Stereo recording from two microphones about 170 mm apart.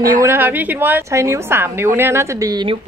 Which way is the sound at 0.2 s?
10° right (ahead or behind).